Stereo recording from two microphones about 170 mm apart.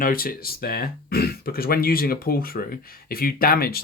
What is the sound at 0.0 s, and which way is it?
Speech, 55° left (ahead or behind).